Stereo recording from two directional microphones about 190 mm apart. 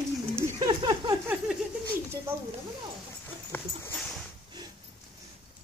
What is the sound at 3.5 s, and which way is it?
Dog, 5° left (ahead or behind).